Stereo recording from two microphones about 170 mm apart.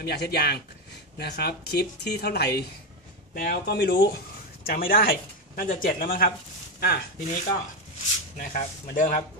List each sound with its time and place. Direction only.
0.0 s speech: 70° left (ahead or behind)
4.6 s speech: 60° left (ahead or behind)
8.4 s speech: 55° left (ahead or behind)